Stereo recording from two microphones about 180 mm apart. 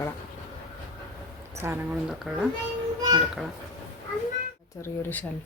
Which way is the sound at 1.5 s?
15° right (ahead or behind).